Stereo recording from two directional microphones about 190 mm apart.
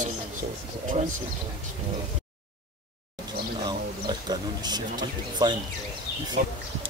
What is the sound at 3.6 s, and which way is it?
Speech, 20° right (ahead or behind).